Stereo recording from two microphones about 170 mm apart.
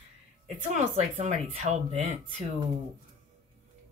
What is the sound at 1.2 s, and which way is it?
Speech, 45° right (ahead or behind).